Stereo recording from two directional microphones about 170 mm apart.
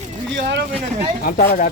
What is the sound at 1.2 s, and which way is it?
Speech, 50° left (ahead or behind).